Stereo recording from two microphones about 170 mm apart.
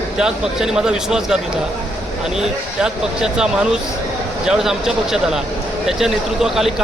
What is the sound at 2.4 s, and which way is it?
Speech, 5° right (ahead or behind).